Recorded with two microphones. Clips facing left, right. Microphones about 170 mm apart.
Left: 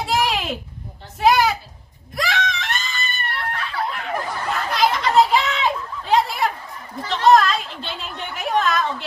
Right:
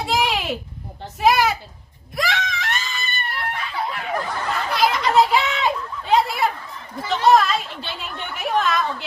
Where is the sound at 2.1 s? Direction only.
Centre (ahead or behind).